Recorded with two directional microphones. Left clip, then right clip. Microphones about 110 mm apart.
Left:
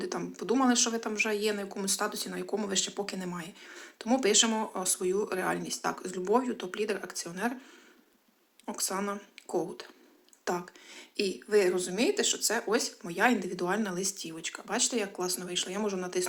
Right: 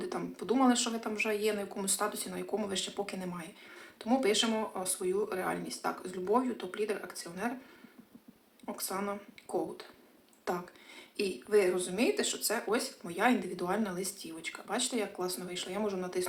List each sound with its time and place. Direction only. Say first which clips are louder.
0.0 s speech: left 2 dB; 25° left (ahead or behind)
8.6 s speech: left 3 dB; 30° left (ahead or behind)